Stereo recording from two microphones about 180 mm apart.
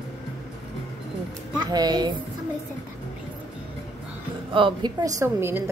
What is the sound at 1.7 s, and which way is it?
Speech, 20° right (ahead or behind).